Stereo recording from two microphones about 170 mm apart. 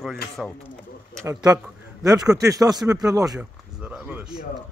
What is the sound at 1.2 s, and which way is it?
Speech, 20° right (ahead or behind).